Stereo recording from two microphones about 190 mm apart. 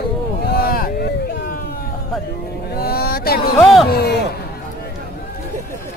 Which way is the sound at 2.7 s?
55° left (ahead or behind).